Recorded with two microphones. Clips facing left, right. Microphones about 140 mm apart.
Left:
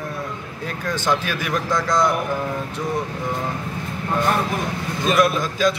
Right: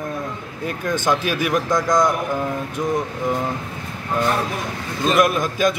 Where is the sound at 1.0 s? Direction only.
10° right (ahead or behind).